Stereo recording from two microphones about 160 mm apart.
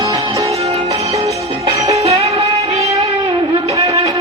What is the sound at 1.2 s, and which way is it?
Music, 20° right (ahead or behind).